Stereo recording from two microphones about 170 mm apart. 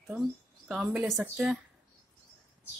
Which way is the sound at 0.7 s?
Centre (ahead or behind).